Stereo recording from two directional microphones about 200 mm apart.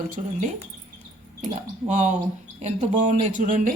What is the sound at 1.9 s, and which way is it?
Speech, 40° right (ahead or behind).